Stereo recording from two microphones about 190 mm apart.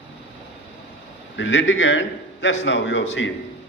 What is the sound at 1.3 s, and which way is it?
A man's voice, 80° left.